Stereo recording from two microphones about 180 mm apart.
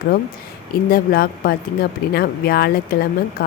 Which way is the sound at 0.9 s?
55° left (ahead or behind).